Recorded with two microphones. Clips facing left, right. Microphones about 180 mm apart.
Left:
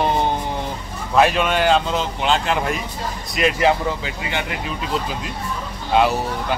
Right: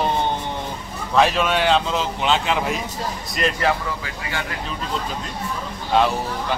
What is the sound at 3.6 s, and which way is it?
Speech, 20° left (ahead or behind).